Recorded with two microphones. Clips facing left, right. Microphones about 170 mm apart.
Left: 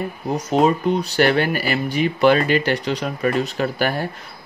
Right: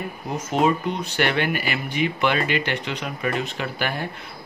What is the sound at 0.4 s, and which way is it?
Speech, 35° left (ahead or behind).